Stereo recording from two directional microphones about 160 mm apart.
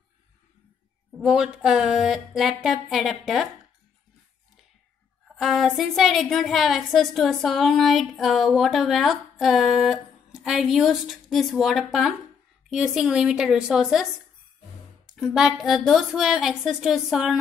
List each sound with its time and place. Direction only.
1.2 s a woman's voice: 5° right (ahead or behind)
5.4 s a woman's voice: centre (ahead or behind)
15.0 s a woman's voice: centre (ahead or behind)